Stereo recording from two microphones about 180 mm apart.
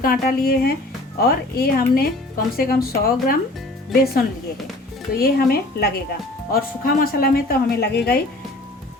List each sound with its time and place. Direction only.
0.0 s speech: 55° left (ahead or behind)
5.1 s speech: 60° left (ahead or behind)